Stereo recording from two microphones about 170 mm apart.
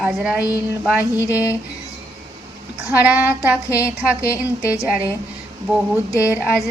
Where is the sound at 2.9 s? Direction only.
10° right (ahead or behind).